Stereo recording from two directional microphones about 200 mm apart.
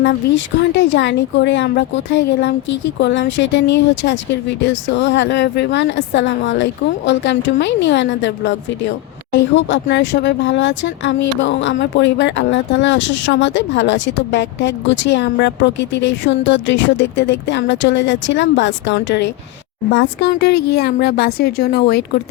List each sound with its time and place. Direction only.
0.0 s speech: 65° left (ahead or behind)